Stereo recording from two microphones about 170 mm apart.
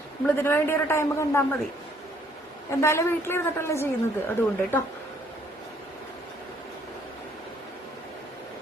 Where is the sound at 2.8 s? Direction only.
15° left (ahead or behind).